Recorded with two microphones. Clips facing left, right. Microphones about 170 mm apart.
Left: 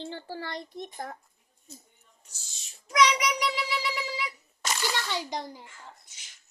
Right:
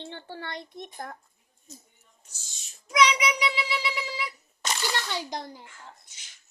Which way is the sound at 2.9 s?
10° right (ahead or behind).